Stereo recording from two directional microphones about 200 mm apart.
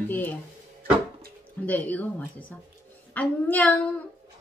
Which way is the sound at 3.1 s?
10° left (ahead or behind).